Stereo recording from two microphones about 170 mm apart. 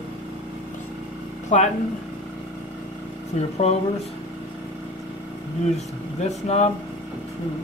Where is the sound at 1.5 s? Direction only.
45° left (ahead or behind).